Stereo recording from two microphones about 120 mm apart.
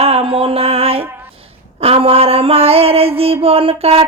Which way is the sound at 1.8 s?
55° right (ahead or behind).